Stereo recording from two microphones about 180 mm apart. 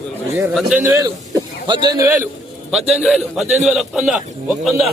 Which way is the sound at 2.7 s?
5° right (ahead or behind).